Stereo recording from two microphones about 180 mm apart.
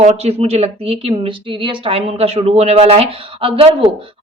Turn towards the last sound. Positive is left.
turn(degrees=-30)  # may be behind; listen again after turning